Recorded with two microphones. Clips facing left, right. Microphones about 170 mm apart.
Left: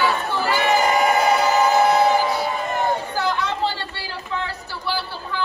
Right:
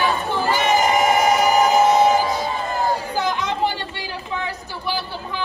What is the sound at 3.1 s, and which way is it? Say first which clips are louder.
Chatter: right 1 dB; 15° right (ahead or behind).